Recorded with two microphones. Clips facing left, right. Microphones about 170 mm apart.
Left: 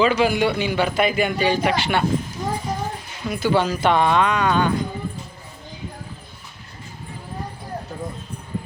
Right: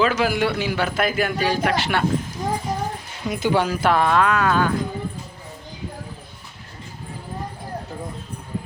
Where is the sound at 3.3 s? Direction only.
20° right (ahead or behind); by 4.9 s centre (ahead or behind).